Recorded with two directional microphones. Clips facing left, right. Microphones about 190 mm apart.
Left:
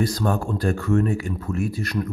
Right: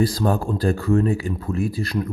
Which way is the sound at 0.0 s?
30° right (ahead or behind).